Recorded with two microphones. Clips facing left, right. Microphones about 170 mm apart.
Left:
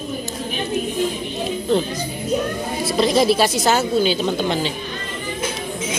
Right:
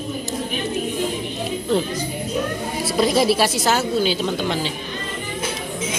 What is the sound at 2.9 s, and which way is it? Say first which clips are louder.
A woman's voice: left 1 dB; 5° right (ahead or behind).